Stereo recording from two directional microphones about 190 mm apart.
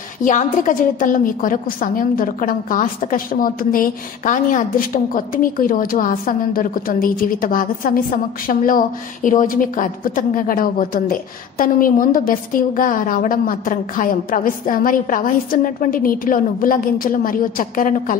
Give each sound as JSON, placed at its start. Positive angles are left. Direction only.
{"t": 0.2, "sound": "a woman's voice", "side_deg": 40}